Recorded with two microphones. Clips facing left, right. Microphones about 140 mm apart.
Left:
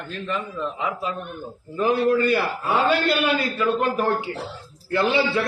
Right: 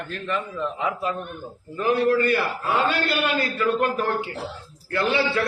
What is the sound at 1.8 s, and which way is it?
Speech, 25° left (ahead or behind).